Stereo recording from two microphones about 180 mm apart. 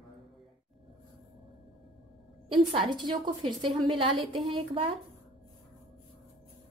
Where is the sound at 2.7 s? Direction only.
25° right (ahead or behind).